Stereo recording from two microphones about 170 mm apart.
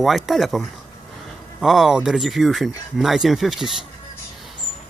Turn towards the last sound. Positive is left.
turn(degrees=0)  # may be behind; listen again after turning